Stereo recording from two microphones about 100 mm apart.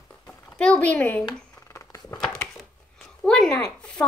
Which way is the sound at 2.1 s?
10° left (ahead or behind).